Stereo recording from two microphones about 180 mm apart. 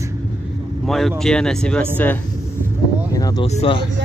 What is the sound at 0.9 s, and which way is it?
Speech, centre (ahead or behind).